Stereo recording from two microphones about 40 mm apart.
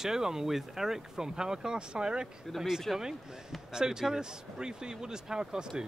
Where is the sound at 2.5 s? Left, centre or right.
Centre.